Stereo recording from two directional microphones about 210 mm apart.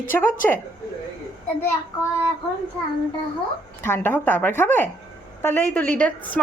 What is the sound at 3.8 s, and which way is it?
Child singing, 10° left (ahead or behind).